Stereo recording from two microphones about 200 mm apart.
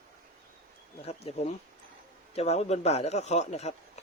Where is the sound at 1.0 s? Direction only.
30° left (ahead or behind).